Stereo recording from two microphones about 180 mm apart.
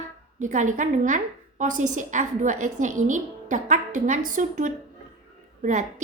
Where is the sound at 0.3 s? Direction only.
45° right (ahead or behind).